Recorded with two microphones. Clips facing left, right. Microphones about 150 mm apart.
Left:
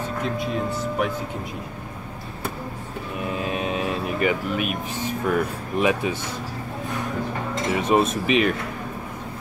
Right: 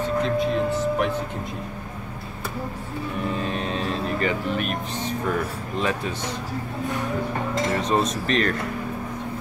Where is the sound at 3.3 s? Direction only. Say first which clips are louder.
Left 5 dB; 10° left (ahead or behind).